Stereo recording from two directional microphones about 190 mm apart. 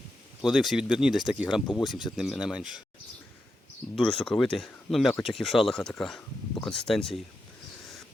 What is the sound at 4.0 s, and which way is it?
A man's voice, 5° left (ahead or behind).